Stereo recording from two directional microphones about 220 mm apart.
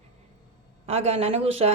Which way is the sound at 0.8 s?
30° right (ahead or behind).